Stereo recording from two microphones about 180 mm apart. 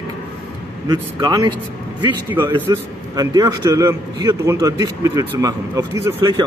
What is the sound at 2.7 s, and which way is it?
A man's voice, 20° right (ahead or behind).